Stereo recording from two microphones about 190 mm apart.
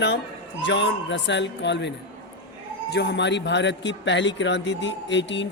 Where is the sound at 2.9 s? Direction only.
65° left (ahead or behind).